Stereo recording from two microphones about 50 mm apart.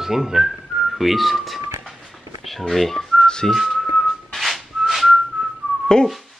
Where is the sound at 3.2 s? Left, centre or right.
Centre.